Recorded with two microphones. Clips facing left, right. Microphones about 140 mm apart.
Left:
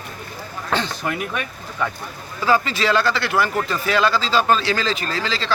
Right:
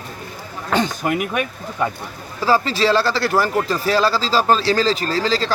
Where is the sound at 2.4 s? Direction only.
35° right (ahead or behind).